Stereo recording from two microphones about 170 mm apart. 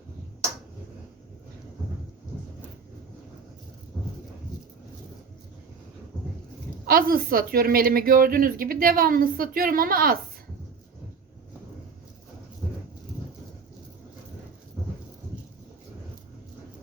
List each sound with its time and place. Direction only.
6.8 s a woman's voice: 60° right (ahead or behind)